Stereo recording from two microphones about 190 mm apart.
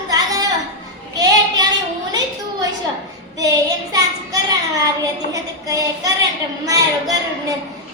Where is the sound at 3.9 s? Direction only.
20° right (ahead or behind).